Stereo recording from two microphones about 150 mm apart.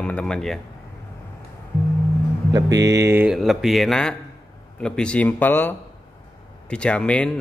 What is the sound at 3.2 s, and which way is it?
A man's voice, centre (ahead or behind).